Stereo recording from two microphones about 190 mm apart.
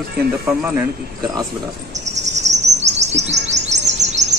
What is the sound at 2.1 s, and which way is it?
Chirp, 35° right (ahead or behind).